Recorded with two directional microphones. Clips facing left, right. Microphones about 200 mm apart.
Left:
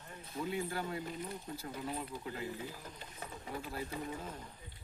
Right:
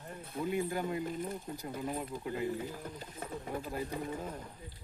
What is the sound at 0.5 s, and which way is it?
Speech, 15° right (ahead or behind).